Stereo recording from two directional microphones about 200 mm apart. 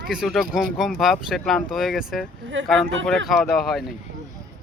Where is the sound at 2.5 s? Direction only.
70° right (ahead or behind).